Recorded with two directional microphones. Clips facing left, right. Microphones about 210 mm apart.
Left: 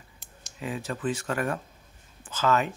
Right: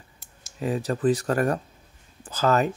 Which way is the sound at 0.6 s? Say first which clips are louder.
Right 7 dB; 40° right (ahead or behind).